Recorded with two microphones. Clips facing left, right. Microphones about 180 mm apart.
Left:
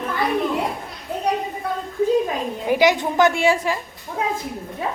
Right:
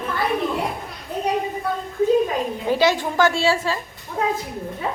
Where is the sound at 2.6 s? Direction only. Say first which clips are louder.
Left 2 dB; 15° left (ahead or behind).